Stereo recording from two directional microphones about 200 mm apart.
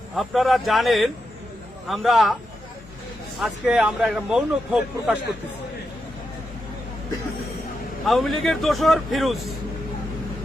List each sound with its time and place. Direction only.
0.2 s a man's voice: centre (ahead or behind)
3.4 s a man's voice: 5° right (ahead or behind)
8.0 s a man's voice: centre (ahead or behind)